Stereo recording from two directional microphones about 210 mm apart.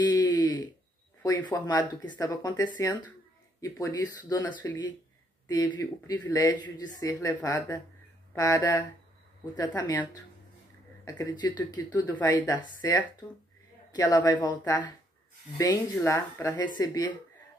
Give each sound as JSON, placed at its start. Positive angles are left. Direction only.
{"t": 0.0, "sound": "a sound", "side_deg": 20}
{"t": 1.2, "sound": "speech", "side_deg": 15}
{"t": 11.1, "sound": "speech", "side_deg": 15}